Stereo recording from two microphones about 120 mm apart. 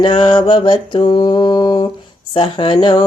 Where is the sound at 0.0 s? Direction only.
45° left (ahead or behind).